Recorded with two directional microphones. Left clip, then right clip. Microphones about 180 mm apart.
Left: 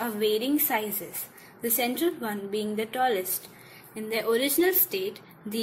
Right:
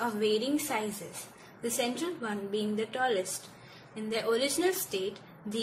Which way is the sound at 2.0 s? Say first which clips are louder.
Left 8 dB; 25° left (ahead or behind).